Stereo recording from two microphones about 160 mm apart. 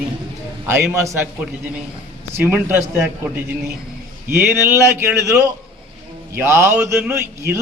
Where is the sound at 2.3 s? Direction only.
15° right (ahead or behind).